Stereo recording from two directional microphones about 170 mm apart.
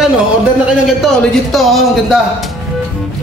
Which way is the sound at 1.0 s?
Centre (ahead or behind).